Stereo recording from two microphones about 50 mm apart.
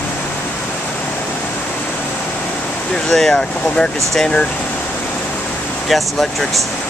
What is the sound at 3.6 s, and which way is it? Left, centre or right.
Speech, centre.